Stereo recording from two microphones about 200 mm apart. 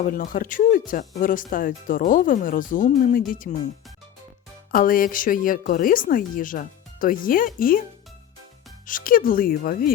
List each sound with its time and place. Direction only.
0.0 s a woman's voice: 45° left (ahead or behind)
4.7 s a woman's voice: 45° left (ahead or behind)
8.9 s a woman's voice: 45° left (ahead or behind)